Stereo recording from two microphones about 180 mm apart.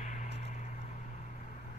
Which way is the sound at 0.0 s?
45° left (ahead or behind).